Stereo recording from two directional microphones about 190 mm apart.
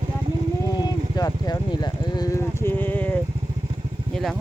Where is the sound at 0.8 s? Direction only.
20° left (ahead or behind).